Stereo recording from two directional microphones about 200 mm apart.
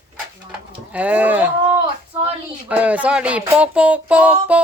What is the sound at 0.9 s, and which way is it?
Speech, 5° right (ahead or behind).